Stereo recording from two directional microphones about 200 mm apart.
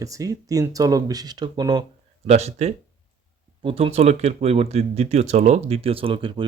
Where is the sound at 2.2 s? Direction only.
35° right (ahead or behind).